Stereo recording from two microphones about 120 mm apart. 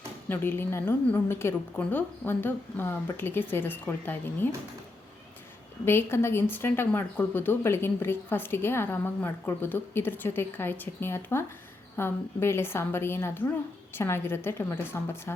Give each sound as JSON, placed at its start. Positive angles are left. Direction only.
{"t": 0.3, "sound": "speech", "side_deg": 20}
{"t": 5.8, "sound": "speech", "side_deg": 20}